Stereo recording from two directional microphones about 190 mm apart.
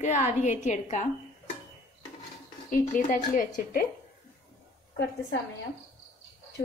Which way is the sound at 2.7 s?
45° left (ahead or behind).